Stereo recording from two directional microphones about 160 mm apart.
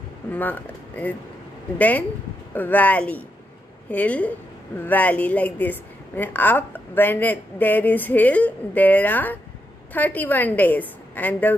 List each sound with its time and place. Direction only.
0.3 s a woman's voice: 10° left (ahead or behind)